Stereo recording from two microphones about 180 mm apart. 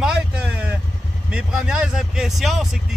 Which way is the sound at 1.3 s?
5° right (ahead or behind).